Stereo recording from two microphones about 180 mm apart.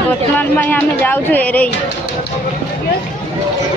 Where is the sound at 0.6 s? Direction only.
10° left (ahead or behind).